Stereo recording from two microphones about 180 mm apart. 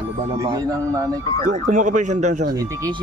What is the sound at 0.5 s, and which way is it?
Speech, 20° right (ahead or behind).